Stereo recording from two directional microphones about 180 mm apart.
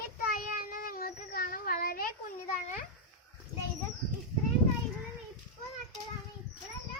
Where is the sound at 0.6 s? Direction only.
55° left (ahead or behind).